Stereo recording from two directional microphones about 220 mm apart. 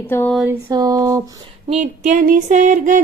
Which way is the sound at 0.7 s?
15° right (ahead or behind).